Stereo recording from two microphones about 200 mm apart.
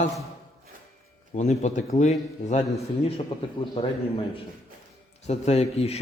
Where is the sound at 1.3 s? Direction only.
35° left (ahead or behind).